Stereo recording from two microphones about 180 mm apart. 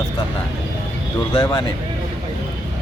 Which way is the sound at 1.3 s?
25° left (ahead or behind).